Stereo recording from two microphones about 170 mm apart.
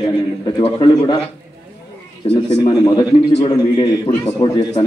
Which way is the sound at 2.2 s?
25° left (ahead or behind).